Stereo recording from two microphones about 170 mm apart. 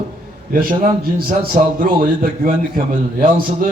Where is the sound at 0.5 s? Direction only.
55° right (ahead or behind).